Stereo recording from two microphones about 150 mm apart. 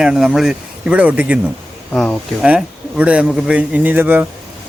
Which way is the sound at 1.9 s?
10° left (ahead or behind).